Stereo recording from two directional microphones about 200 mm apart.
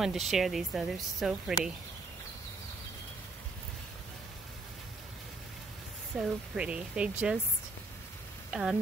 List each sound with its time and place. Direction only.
0.0 s a woman's voice: centre (ahead or behind)
6.1 s a woman's voice: 5° right (ahead or behind)
8.5 s speech: centre (ahead or behind)